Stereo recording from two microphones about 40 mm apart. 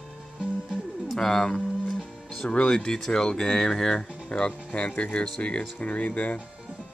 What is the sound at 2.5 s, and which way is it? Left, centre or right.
Speech, left.